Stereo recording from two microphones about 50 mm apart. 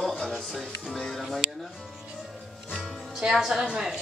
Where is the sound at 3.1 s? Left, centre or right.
Centre.